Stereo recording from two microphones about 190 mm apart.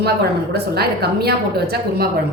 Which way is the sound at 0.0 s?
60° right (ahead or behind).